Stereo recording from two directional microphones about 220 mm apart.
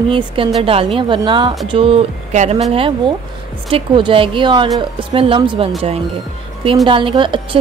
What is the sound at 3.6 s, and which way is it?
Speech, 25° right (ahead or behind).